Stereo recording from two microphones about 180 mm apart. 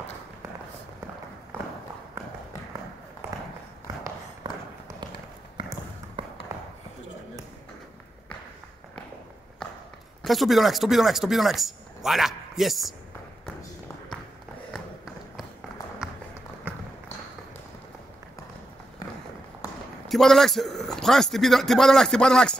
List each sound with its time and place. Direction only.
3.8 s run: 20° right (ahead or behind)
5.6 s a sound: 25° right (ahead or behind)
10.2 s speech: centre (ahead or behind)
20.1 s a man's voice: centre (ahead or behind)